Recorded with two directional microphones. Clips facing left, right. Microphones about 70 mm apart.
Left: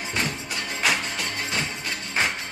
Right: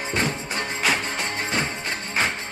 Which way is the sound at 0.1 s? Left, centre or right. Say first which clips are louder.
Right 3 dB; right.